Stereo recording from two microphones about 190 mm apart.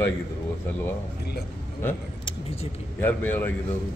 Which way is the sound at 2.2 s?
35° left (ahead or behind).